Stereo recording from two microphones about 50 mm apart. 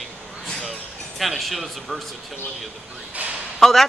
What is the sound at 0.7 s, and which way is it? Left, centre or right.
Speech, centre.